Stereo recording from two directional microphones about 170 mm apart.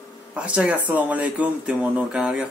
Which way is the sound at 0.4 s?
10° right (ahead or behind).